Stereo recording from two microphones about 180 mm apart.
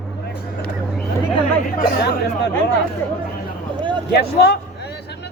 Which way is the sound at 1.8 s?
60° left (ahead or behind).